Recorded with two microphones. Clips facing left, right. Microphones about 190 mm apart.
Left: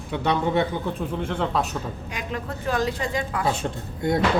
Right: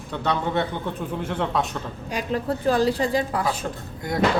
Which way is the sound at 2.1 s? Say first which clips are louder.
Right 9 dB; 35° right (ahead or behind).